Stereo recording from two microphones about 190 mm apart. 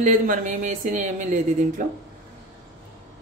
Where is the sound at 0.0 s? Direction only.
40° right (ahead or behind).